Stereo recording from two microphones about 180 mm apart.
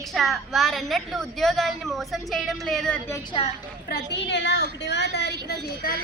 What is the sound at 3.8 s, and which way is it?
A woman's voice, 65° left (ahead or behind).